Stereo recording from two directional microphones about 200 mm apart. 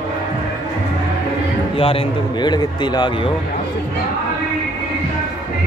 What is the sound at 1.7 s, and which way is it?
A man's voice, 25° left (ahead or behind).